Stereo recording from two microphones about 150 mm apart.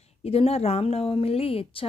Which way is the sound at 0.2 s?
40° left (ahead or behind).